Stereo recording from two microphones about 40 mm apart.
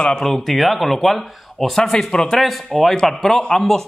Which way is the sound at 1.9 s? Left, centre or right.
Centre.